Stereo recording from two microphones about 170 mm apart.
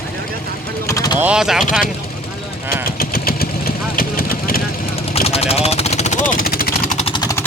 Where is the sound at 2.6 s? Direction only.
60° left (ahead or behind).